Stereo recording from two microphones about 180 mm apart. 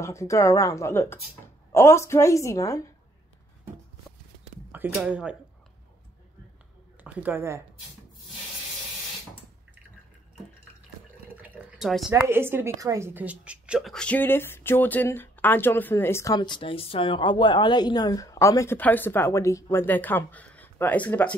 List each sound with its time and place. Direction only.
0.0 s a woman's voice: 15° left (ahead or behind)
4.7 s speech: 10° right (ahead or behind)
7.0 s a woman's voice: 10° right (ahead or behind)
11.4 s a sound: 5° right (ahead or behind)
12.1 s a woman's voice: 10° right (ahead or behind); by 21.4 s 10° left (ahead or behind)